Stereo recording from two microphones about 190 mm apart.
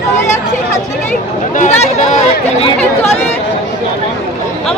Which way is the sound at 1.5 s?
40° left (ahead or behind).